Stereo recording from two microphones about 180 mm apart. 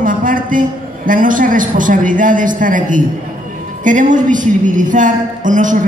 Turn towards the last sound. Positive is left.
turn(degrees=-45)  # may be behind; listen again after turning